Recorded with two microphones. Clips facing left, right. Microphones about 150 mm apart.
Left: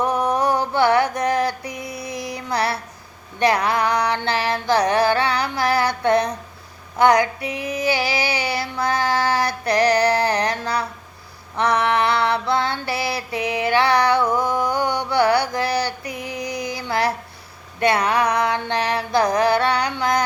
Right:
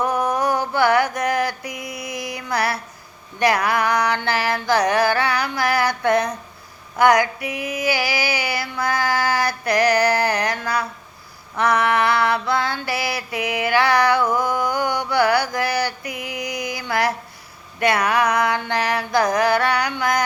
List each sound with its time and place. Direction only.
0.1 s mantra: 30° left (ahead or behind)
3.4 s female singing: 25° left (ahead or behind)
14.4 s mantra: 30° left (ahead or behind)
16.0 s female singing: 10° right (ahead or behind)
16.4 s a sound: 30° left (ahead or behind)
17.7 s female singing: 30° left (ahead or behind)